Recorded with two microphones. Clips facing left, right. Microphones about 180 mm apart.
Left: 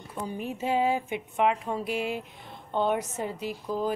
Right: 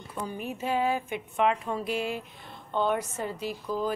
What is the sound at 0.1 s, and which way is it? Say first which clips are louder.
A woman's voice: left 1 dB; 20° left (ahead or behind).